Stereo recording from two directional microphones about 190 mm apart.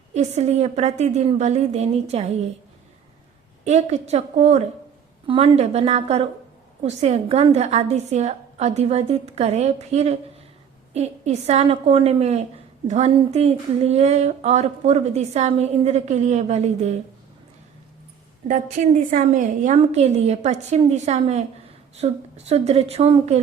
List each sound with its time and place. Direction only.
0.1 s speech: 35° right (ahead or behind)
3.6 s speech: 35° right (ahead or behind)
18.4 s speech: 40° right (ahead or behind)